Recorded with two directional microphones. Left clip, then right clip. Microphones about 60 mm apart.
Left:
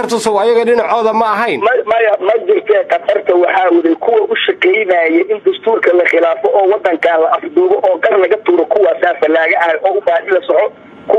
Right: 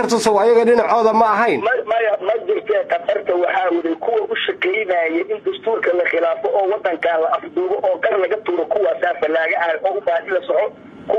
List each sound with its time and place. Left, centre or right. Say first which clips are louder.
0.1 s a man's voice: left 2 dB; left